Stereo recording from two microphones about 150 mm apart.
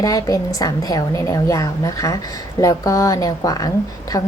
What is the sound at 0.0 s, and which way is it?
A woman's voice, 25° left (ahead or behind).